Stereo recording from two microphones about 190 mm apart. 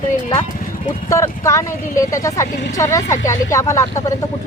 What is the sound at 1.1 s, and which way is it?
Speech, 15° left (ahead or behind).